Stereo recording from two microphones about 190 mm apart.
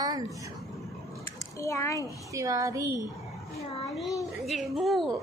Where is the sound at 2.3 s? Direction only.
15° right (ahead or behind).